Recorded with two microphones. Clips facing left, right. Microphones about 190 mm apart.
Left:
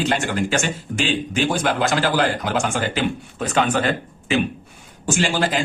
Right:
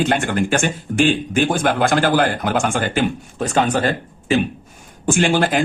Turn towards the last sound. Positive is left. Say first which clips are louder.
# right 4 dB
turn(degrees=-55)  # may be behind; listen again after turning